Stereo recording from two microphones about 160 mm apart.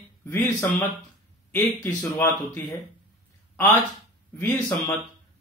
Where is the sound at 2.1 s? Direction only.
15° left (ahead or behind).